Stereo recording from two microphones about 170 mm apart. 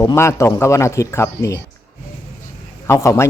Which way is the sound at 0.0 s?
15° left (ahead or behind).